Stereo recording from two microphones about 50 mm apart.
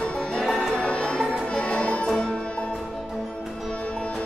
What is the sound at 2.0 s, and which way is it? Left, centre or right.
Music, centre.